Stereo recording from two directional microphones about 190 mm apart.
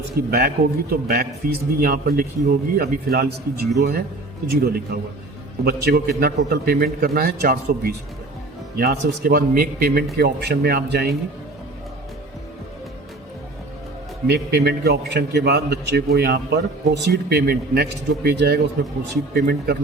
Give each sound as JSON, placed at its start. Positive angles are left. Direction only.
{"t": 0.3, "sound": "a man's voice", "side_deg": -50}
{"t": 14.3, "sound": "a man's voice", "side_deg": -60}